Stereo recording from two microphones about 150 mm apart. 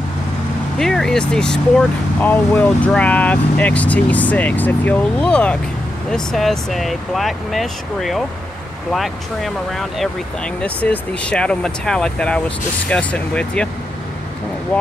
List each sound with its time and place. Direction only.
0.7 s speech: 5° left (ahead or behind)
14.7 s speech: 10° left (ahead or behind)